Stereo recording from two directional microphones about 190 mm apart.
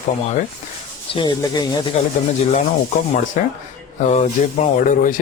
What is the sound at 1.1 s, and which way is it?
Speech, 25° left (ahead or behind).